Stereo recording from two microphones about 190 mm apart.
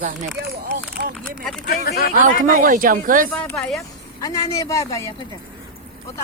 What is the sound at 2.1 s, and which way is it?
Speech, 45° right (ahead or behind).